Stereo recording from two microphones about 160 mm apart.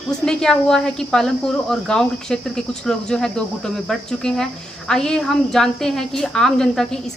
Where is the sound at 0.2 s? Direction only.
5° left (ahead or behind).